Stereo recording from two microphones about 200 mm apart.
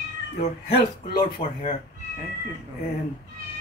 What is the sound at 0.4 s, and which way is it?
Speech, 30° left (ahead or behind).